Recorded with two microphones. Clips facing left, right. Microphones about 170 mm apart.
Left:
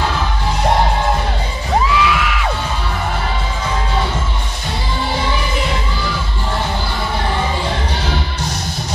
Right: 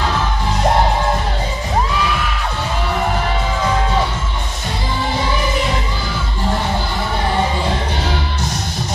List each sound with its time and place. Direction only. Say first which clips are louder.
2.0 s music: left 3 dB; 90° left